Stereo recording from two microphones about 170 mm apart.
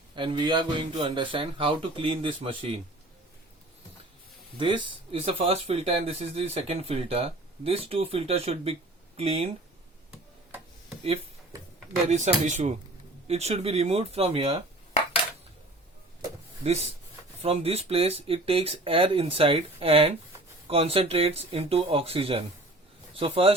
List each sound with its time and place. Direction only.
0.2 s speech: 30° right (ahead or behind)
4.5 s speech: 30° right (ahead or behind)
10.1 s tick-tock: 5° right (ahead or behind)
12.0 s speech: 45° right (ahead or behind)
16.6 s speech: 40° right (ahead or behind)